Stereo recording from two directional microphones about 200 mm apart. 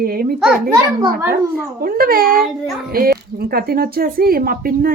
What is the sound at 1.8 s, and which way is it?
Speech, 45° right (ahead or behind).